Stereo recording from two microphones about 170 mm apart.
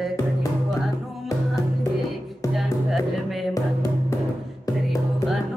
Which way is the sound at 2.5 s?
Centre (ahead or behind).